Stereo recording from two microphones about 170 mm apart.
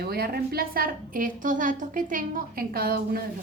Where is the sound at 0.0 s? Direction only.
65° right (ahead or behind).